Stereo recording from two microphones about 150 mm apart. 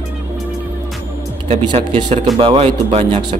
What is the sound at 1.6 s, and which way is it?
Mantra, 35° right (ahead or behind).